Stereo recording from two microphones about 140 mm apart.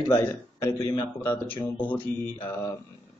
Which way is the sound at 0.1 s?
20° left (ahead or behind).